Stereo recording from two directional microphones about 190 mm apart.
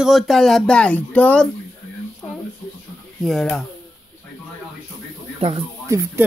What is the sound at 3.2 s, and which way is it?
Speech, centre (ahead or behind).